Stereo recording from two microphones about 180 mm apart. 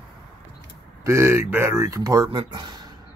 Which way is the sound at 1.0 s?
15° right (ahead or behind).